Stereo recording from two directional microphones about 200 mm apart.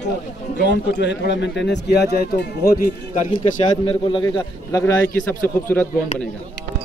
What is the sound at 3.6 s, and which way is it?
A man's voice, 25° left (ahead or behind).